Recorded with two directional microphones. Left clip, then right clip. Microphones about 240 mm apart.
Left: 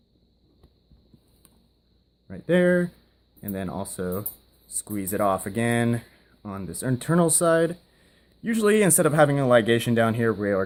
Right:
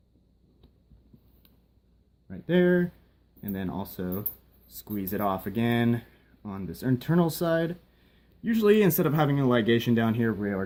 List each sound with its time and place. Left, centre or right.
2.2 s speech: left